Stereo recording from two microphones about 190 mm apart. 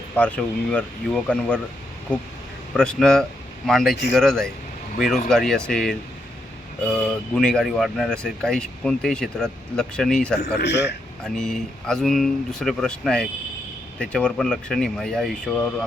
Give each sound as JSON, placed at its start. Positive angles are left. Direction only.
{"t": 0.2, "sound": "speech", "side_deg": 5}
{"t": 2.7, "sound": "speech", "side_deg": 5}
{"t": 10.6, "sound": "a man's voice", "side_deg": 60}
{"t": 11.2, "sound": "speech", "side_deg": 5}